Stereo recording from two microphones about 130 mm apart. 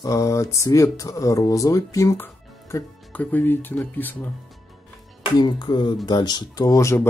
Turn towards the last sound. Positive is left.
turn(degrees=20)  # may be behind; listen again after turning